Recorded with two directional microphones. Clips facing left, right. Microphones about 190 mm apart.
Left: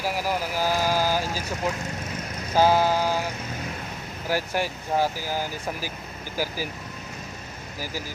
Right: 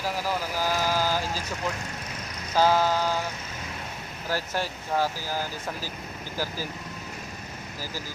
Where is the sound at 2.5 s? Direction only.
15° left (ahead or behind).